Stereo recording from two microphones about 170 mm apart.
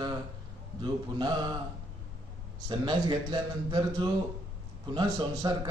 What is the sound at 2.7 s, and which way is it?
A man's voice, 25° right (ahead or behind).